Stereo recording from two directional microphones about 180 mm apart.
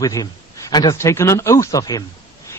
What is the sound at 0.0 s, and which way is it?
A man's voice, 20° left (ahead or behind).